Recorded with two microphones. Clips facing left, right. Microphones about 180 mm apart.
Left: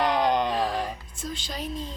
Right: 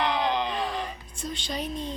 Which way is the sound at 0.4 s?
Centre (ahead or behind).